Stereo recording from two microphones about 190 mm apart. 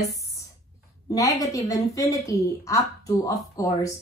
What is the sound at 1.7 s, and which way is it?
A woman's voice, 15° left (ahead or behind).